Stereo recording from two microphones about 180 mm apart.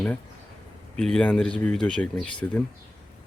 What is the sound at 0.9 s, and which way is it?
Speech, 5° left (ahead or behind).